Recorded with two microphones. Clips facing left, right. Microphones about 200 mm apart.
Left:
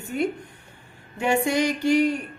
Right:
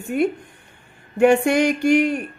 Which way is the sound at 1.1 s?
55° right (ahead or behind).